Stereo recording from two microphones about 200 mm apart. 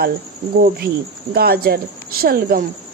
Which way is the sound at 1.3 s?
50° right (ahead or behind).